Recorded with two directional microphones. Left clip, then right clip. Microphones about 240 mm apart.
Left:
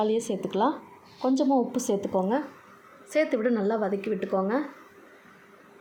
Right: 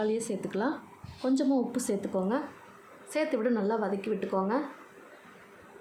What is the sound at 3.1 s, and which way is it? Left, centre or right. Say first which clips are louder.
A woman's voice: left 4 dB; centre.